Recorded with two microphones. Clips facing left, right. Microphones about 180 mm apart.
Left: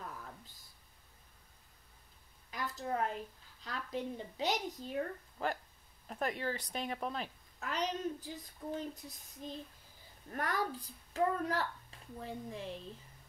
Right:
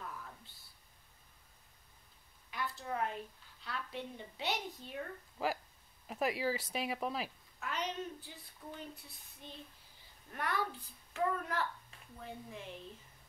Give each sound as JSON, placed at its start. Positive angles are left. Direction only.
{"t": 2.5, "sound": "a sound", "side_deg": 40}
{"t": 3.6, "sound": "a woman's voice", "side_deg": 40}
{"t": 5.4, "sound": "speech", "side_deg": -5}
{"t": 7.6, "sound": "a woman's voice", "side_deg": 40}